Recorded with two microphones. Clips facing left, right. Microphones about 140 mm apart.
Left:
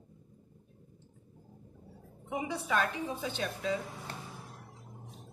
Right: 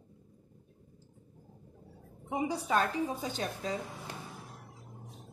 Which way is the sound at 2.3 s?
35° right (ahead or behind).